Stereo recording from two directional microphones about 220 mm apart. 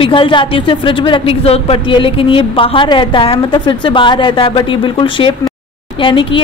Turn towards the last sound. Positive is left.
turn(degrees=25)  # may be behind; listen again after turning